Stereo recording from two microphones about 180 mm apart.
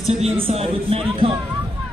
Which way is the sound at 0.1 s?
35° right (ahead or behind).